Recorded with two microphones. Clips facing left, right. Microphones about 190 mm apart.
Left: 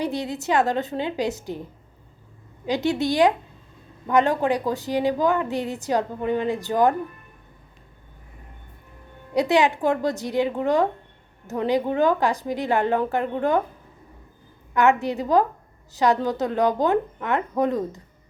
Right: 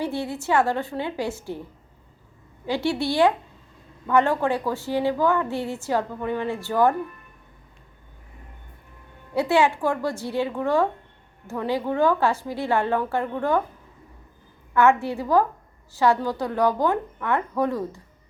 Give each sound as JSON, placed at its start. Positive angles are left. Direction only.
{"t": 0.0, "sound": "a woman's voice", "side_deg": 15}
{"t": 2.6, "sound": "a woman's voice", "side_deg": 20}
{"t": 9.3, "sound": "a woman's voice", "side_deg": 15}
{"t": 14.7, "sound": "a woman's voice", "side_deg": 20}